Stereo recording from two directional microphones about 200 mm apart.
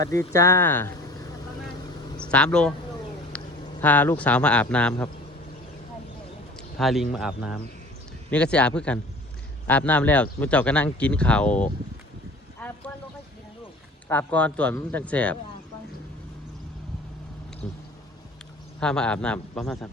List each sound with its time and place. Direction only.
0.0 s speech: 15° left (ahead or behind)
2.1 s speech: 5° left (ahead or behind)
6.6 s a man's voice: centre (ahead or behind)
12.5 s vehicle: 10° left (ahead or behind)
14.1 s speech: 5° left (ahead or behind)
17.6 s a man's voice: 5° left (ahead or behind)